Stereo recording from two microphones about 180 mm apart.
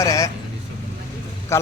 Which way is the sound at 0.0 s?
15° left (ahead or behind).